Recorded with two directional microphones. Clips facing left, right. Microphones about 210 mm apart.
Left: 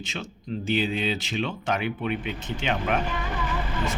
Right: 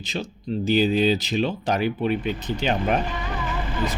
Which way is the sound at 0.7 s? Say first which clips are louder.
Right 7 dB; 35° right (ahead or behind).